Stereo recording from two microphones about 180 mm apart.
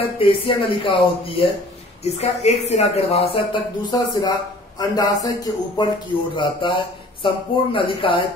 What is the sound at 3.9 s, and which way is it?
Speech, 20° left (ahead or behind).